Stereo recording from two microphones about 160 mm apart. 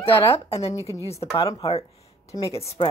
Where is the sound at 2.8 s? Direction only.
30° left (ahead or behind).